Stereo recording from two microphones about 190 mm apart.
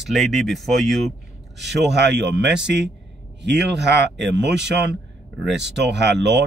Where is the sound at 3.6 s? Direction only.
65° right (ahead or behind).